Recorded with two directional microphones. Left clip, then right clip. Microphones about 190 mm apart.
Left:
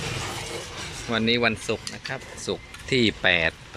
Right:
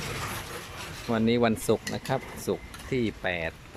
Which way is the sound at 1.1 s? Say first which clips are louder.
Left 3 dB; 15° right (ahead or behind).